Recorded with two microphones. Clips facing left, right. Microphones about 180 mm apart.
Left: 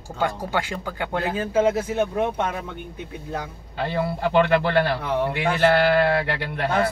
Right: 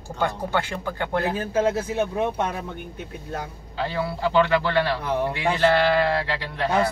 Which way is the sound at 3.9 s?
55° left (ahead or behind).